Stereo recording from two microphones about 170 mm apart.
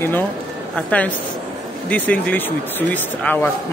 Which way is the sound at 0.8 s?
10° left (ahead or behind).